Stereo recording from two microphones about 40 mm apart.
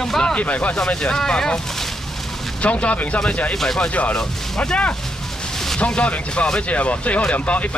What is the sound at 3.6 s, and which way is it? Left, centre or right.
Speech, centre.